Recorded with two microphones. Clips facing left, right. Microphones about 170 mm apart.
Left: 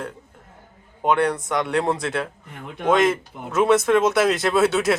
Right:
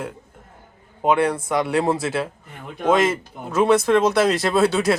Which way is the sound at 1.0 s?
5° right (ahead or behind).